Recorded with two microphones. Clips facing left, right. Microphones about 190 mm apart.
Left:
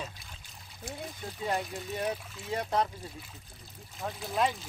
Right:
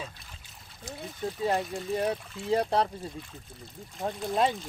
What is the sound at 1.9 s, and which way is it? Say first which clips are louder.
Speech: right 4 dB; 30° right (ahead or behind).